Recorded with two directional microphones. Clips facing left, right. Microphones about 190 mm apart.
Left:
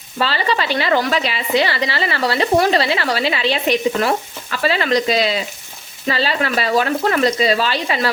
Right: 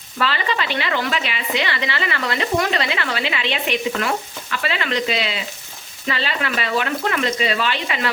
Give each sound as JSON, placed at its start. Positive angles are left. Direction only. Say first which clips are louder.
{"t": 0.2, "sound": "a woman's voice", "louder": "left 3 dB", "side_deg": 35}